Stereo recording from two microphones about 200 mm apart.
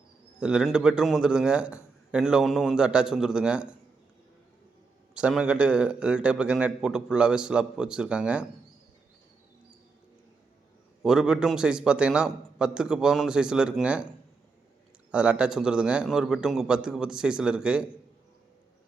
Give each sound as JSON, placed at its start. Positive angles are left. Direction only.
{"t": 0.3, "sound": "a man's voice", "side_deg": -5}
{"t": 5.1, "sound": "a man's voice", "side_deg": -5}
{"t": 11.0, "sound": "a man's voice", "side_deg": -5}
{"t": 15.1, "sound": "a man's voice", "side_deg": -5}